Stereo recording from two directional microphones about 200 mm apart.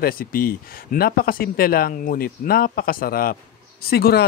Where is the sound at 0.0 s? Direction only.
45° left (ahead or behind).